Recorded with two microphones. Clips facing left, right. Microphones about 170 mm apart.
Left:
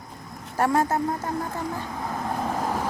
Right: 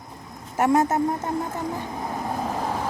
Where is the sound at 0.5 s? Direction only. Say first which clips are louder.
Right 2 dB; 20° right (ahead or behind).